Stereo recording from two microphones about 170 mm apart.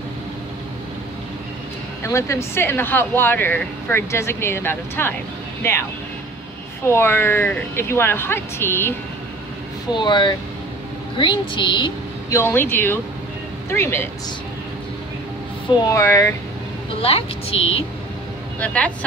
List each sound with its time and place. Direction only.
2.0 s speech: 15° left (ahead or behind)
6.9 s speech: 15° left (ahead or behind)
9.9 s speech: 25° left (ahead or behind)
12.4 s speech: 15° left (ahead or behind)
15.8 s speech: 15° left (ahead or behind)
17.0 s a woman's voice: 35° left (ahead or behind)
18.6 s speech: 5° left (ahead or behind)